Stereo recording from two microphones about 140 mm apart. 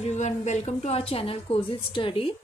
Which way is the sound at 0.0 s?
55° left (ahead or behind).